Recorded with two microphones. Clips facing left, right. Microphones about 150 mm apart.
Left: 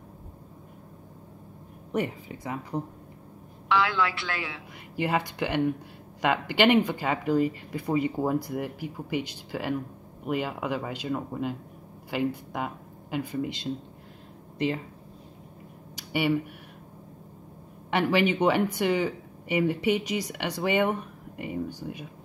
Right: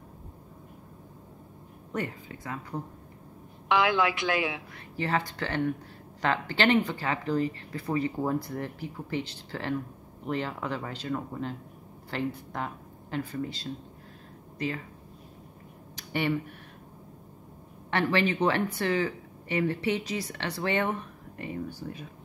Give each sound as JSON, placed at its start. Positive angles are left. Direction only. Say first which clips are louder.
{"t": 1.9, "sound": "speech", "louder": "left 4 dB", "side_deg": 20}
{"t": 3.6, "sound": "a man's voice", "louder": "right 1 dB", "side_deg": -15}
{"t": 4.9, "sound": "speech", "louder": "left 2 dB", "side_deg": 10}
{"t": 16.0, "sound": "speech", "louder": "left 3 dB", "side_deg": 10}
{"t": 17.9, "sound": "speech", "louder": "left 3 dB", "side_deg": 10}